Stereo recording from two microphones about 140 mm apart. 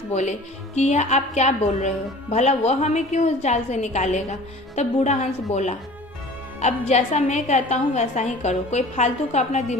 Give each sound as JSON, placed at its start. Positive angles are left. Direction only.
{"t": 0.1, "sound": "a woman's voice", "side_deg": 55}